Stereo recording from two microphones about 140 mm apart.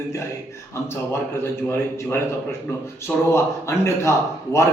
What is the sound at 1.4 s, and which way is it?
A man's voice, 15° left (ahead or behind).